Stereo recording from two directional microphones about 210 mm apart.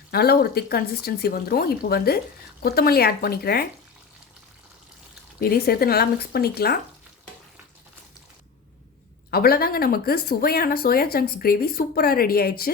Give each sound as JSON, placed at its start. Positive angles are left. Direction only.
{"t": 0.1, "sound": "speech", "side_deg": 50}
{"t": 5.4, "sound": "speech", "side_deg": 45}
{"t": 9.3, "sound": "speech", "side_deg": 45}